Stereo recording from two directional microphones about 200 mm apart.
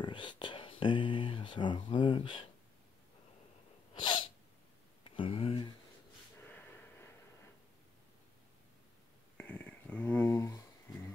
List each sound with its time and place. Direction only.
0.0 s speech: 25° left (ahead or behind)
3.9 s sneeze: 25° left (ahead or behind)
5.0 s speech: 25° left (ahead or behind)
9.4 s a sound: 10° left (ahead or behind)